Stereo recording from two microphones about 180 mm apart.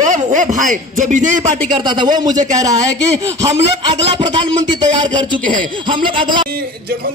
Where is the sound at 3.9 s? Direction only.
25° right (ahead or behind).